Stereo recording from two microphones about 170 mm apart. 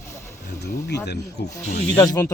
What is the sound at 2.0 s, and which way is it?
Speech, 20° left (ahead or behind).